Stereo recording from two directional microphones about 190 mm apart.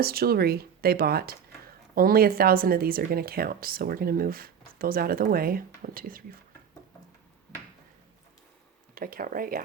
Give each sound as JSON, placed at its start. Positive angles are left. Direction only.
{"t": 0.0, "sound": "speech", "side_deg": -55}
{"t": 9.0, "sound": "speech", "side_deg": -50}